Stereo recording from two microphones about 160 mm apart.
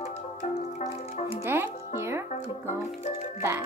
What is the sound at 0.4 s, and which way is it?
Music, 55° left (ahead or behind).